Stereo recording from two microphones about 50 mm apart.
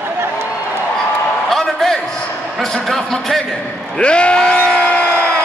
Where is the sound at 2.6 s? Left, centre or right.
Centre.